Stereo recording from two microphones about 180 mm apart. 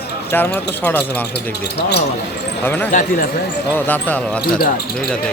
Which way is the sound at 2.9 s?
45° left (ahead or behind).